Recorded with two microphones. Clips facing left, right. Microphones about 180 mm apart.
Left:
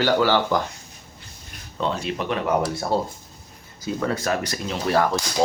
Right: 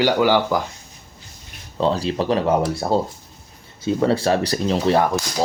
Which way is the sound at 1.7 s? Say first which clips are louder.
Right 6 dB; 35° right (ahead or behind).